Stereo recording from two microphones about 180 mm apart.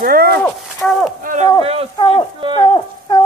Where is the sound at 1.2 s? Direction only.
45° right (ahead or behind).